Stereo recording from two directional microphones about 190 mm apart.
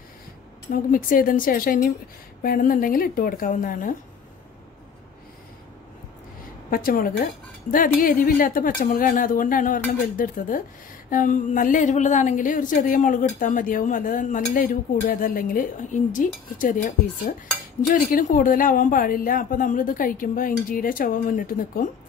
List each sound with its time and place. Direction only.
0.7 s a woman's voice: 45° left (ahead or behind)
6.7 s a woman's voice: 50° left (ahead or behind)